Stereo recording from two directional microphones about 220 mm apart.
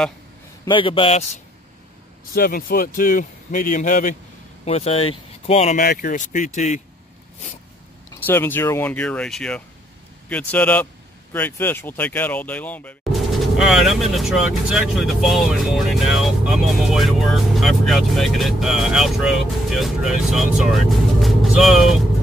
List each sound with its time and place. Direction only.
0.7 s a man's voice: 25° left (ahead or behind)
2.3 s speech: 40° left (ahead or behind)
5.9 s speech: 40° left (ahead or behind)
8.1 s speech: 10° left (ahead or behind)